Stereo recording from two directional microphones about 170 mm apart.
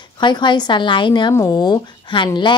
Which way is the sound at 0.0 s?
25° left (ahead or behind).